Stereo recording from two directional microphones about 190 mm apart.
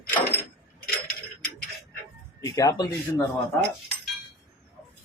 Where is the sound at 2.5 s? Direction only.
20° left (ahead or behind).